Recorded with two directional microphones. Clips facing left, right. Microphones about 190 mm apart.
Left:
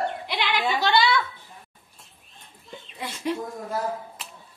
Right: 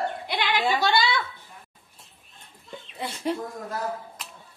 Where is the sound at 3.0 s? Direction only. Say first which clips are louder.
Even; 30° right (ahead or behind).